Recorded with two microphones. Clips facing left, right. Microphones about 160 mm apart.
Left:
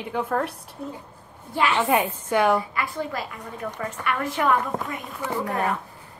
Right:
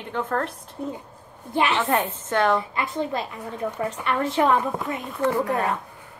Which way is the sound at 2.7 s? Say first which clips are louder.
Right 2 dB; 25° right (ahead or behind).